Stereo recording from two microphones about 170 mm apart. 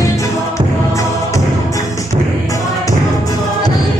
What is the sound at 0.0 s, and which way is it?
Music, 20° left (ahead or behind).